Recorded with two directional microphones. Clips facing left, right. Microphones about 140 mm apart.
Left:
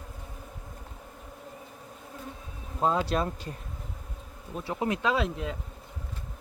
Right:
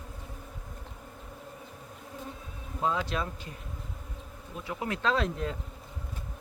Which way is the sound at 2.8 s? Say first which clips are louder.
Left 4 dB; 40° left (ahead or behind).